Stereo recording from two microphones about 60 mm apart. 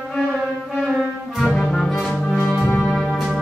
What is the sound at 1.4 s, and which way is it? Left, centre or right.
Brass instrument, centre.